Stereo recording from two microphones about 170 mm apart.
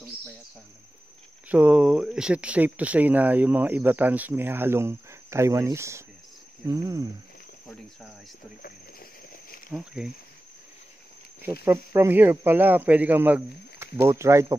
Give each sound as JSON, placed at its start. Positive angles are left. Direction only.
{"t": 1.5, "sound": "speech", "side_deg": -5}
{"t": 6.6, "sound": "cricket", "side_deg": -20}
{"t": 9.8, "sound": "speech", "side_deg": -5}
{"t": 11.6, "sound": "speech", "side_deg": -15}